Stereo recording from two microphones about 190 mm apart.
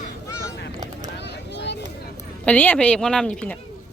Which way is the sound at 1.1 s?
65° left (ahead or behind).